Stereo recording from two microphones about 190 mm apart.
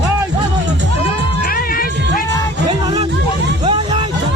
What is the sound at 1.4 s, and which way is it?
Music, 50° left (ahead or behind).